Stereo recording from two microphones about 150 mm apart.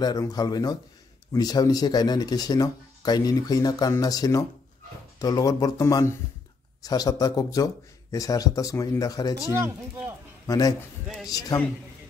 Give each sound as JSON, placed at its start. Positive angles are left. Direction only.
{"t": 0.0, "sound": "speech", "side_deg": 25}
{"t": 9.5, "sound": "speech", "side_deg": -15}
{"t": 10.4, "sound": "a man's voice", "side_deg": 25}